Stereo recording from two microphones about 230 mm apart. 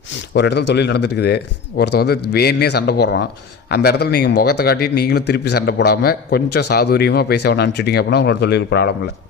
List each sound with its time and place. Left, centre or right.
0.3 s a man's voice: left